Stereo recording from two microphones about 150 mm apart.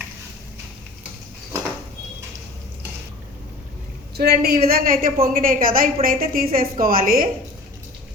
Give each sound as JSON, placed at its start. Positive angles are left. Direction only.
{"t": 4.2, "sound": "a woman's voice", "side_deg": -90}